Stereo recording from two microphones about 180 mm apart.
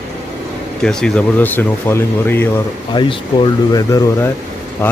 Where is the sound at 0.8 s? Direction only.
5° left (ahead or behind).